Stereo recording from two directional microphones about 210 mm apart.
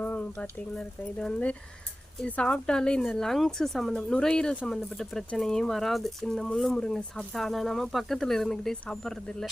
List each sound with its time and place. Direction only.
0.0 s speech: 5° left (ahead or behind)